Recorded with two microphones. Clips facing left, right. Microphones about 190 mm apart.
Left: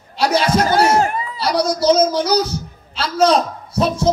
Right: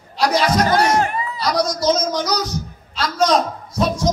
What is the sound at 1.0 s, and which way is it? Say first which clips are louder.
A man's voice: left 2 dB; 30° left (ahead or behind).